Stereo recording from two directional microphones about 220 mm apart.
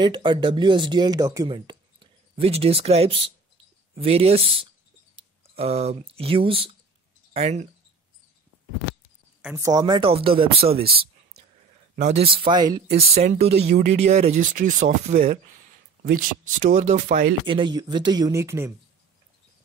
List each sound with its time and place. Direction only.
0.0 s speech: 20° right (ahead or behind)
9.4 s speech: 5° right (ahead or behind)
9.7 s speech: 15° right (ahead or behind)
11.9 s speech: 30° right (ahead or behind)
12.9 s speech: 30° right (ahead or behind); by 18.7 s 15° right (ahead or behind)